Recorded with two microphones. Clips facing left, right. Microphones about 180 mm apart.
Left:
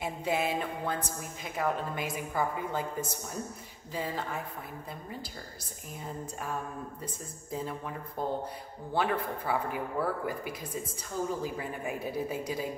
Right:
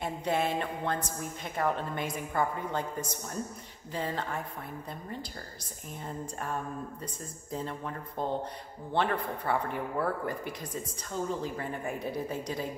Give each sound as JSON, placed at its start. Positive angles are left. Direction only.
{"t": 0.0, "sound": "speech", "side_deg": 5}
{"t": 3.9, "sound": "speech", "side_deg": 5}
{"t": 7.5, "sound": "speech", "side_deg": 5}